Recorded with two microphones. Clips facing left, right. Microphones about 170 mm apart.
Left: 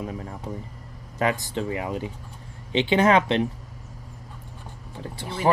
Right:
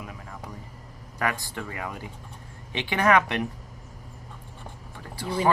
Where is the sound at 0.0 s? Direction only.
35° left (ahead or behind).